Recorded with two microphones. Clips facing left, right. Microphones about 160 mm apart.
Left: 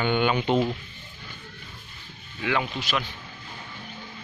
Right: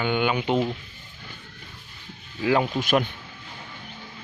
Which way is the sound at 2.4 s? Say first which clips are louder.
Right 5 dB; 35° right (ahead or behind).